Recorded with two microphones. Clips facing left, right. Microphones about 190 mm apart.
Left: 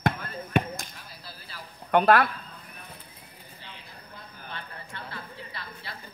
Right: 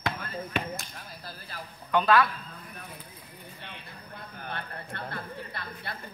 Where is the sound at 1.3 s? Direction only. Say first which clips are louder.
Right 3 dB; 50° right (ahead or behind).